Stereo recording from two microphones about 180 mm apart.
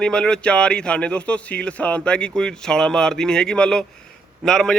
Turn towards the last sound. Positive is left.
turn(degrees=0)  # may be behind; listen again after turning